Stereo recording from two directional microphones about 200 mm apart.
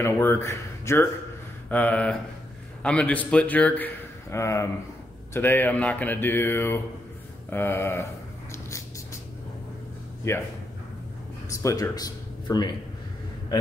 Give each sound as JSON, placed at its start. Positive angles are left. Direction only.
{"t": 0.0, "sound": "a man's voice", "side_deg": 10}
{"t": 7.4, "sound": "a sound", "side_deg": 10}
{"t": 10.3, "sound": "a man's voice", "side_deg": 15}
{"t": 11.4, "sound": "speech", "side_deg": 15}